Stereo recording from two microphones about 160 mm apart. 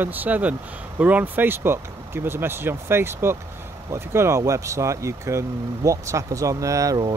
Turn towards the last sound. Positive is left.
turn(degrees=-25)  # may be behind; listen again after turning